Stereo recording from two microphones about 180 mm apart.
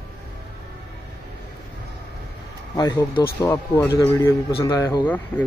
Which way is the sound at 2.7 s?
20° left (ahead or behind).